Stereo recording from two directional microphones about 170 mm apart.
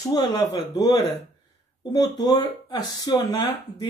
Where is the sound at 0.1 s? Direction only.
25° left (ahead or behind).